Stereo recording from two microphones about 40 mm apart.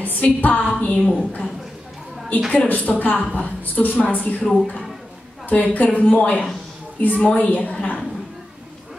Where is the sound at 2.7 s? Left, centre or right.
Left.